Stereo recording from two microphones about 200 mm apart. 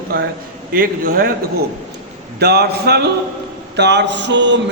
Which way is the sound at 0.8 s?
45° right (ahead or behind).